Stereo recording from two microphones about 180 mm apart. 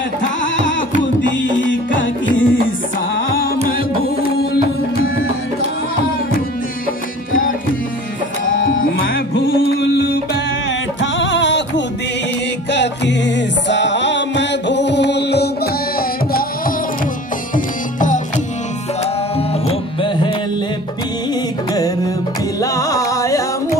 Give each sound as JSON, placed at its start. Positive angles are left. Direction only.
{"t": 1.4, "sound": "music", "side_deg": 90}
{"t": 8.6, "sound": "music", "side_deg": 55}
{"t": 11.0, "sound": "music", "side_deg": 90}
{"t": 19.3, "sound": "music", "side_deg": 30}
{"t": 21.7, "sound": "music", "side_deg": 20}